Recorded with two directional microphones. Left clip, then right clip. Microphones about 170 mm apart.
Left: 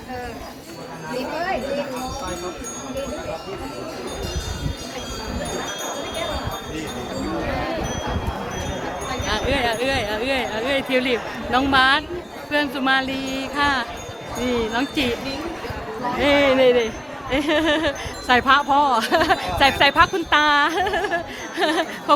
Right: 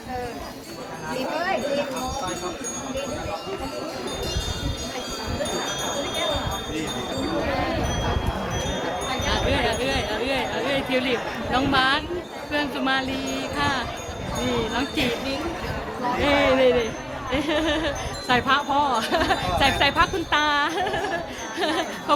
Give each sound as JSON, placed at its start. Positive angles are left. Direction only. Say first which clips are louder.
{"t": 9.3, "sound": "a sound", "louder": "left 3 dB", "side_deg": 45}
{"t": 12.5, "sound": "speech", "louder": "left 4 dB", "side_deg": 45}
{"t": 16.2, "sound": "speech", "louder": "left 3 dB", "side_deg": 50}